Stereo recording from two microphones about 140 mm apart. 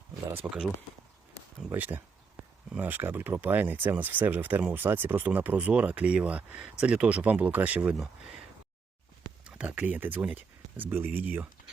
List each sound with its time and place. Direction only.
0.4 s speech: 10° right (ahead or behind)
1.4 s a sound: 25° right (ahead or behind)
1.7 s speech: 15° right (ahead or behind)
9.4 s speech: 10° right (ahead or behind)